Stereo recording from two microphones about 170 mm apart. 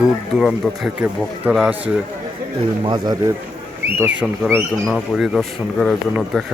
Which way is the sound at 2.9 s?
25° right (ahead or behind).